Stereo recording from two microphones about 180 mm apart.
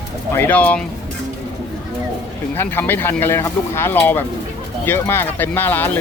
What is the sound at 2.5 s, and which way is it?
Speech, 10° left (ahead or behind).